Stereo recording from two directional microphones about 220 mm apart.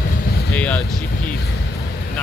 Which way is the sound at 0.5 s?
5° left (ahead or behind).